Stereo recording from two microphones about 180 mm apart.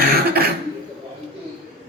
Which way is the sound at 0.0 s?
60° right (ahead or behind).